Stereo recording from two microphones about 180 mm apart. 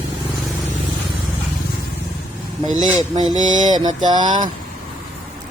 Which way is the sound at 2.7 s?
45° right (ahead or behind).